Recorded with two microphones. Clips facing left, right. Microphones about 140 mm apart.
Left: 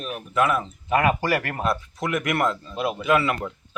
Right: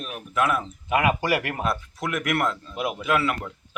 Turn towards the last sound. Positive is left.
turn(degrees=0)  # may be behind; listen again after turning